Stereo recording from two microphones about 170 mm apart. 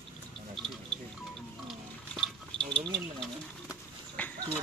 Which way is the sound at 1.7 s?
Centre (ahead or behind).